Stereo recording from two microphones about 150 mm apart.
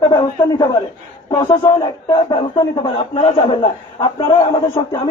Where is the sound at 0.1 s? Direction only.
25° left (ahead or behind).